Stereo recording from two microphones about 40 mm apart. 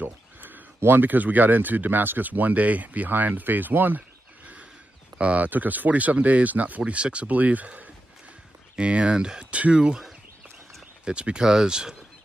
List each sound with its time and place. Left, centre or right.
0.0 s a sound: right
0.7 s speech: right
5.2 s speech: right
5.5 s speech: right
6.9 s speech: right
7.2 s speech: right
8.7 s speech: right
9.5 s speech: right
11.1 s speech: right